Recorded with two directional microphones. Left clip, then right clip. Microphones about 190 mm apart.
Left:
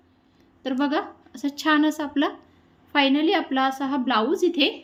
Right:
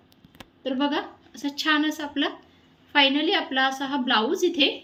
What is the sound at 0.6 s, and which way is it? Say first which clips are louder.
A woman's voice: left 1 dB; 10° left (ahead or behind).